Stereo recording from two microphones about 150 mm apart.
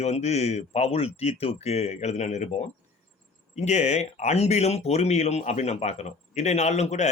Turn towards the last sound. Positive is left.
turn(degrees=50)  # may be behind; listen again after turning